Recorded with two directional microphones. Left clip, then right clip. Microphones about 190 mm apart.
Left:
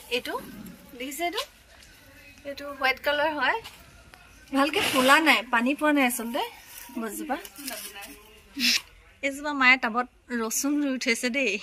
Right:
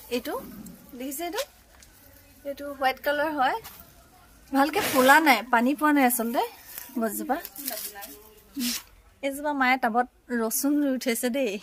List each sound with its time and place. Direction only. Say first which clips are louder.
0.1 s speech: left 1 dB; 70° right (ahead or behind)
2.4 s a woman's voice: even; 60° right (ahead or behind)
4.5 s a woman's voice: even; 45° right (ahead or behind)
8.5 s speech: left 8 dB; 15° right (ahead or behind)
9.4 s a woman's voice: left 3 dB; 45° right (ahead or behind)